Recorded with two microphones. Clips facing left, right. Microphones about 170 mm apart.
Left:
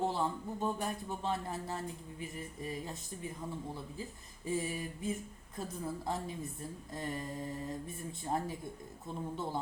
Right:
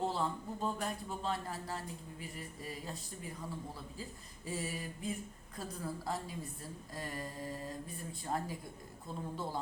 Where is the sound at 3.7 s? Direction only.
20° left (ahead or behind).